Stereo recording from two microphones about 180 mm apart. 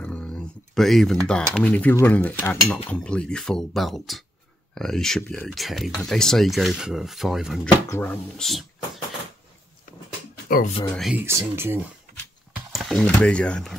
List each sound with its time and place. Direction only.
0.0 s speech: 5° left (ahead or behind)
9.9 s a sound: 45° left (ahead or behind)
11.0 s speech: 5° right (ahead or behind)
11.2 s speech: 15° right (ahead or behind)
12.7 s speech: centre (ahead or behind)